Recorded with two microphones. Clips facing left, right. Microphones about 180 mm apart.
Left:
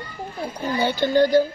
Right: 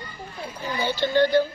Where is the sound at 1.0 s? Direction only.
45° left (ahead or behind).